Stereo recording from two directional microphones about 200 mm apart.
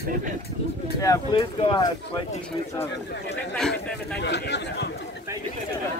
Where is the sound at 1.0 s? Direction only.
20° left (ahead or behind).